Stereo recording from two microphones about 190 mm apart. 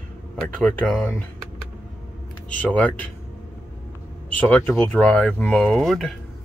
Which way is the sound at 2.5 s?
5° left (ahead or behind).